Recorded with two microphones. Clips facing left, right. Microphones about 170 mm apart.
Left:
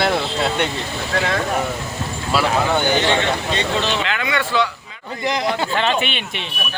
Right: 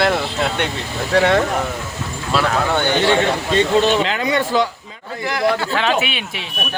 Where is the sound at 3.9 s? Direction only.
35° right (ahead or behind).